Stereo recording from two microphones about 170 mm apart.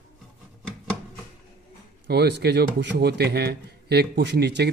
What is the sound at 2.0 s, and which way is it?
A man's voice, 75° right (ahead or behind).